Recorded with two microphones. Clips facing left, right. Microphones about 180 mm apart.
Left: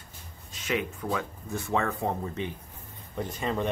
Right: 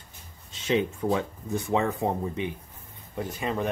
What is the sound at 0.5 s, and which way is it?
Speech, 25° right (ahead or behind).